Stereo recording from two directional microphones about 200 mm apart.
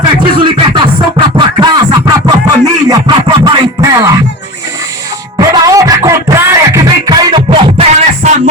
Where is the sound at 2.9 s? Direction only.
25° right (ahead or behind).